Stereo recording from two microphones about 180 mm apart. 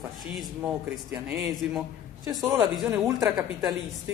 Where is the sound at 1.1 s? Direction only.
5° right (ahead or behind).